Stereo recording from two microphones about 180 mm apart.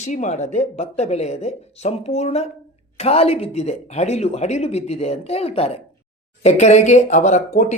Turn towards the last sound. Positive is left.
turn(degrees=40)  # may be behind; listen again after turning